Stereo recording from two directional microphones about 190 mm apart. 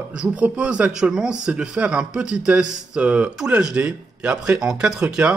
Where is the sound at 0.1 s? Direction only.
5° right (ahead or behind).